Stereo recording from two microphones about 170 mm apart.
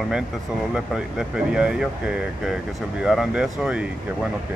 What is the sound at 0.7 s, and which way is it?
Speech, 5° right (ahead or behind).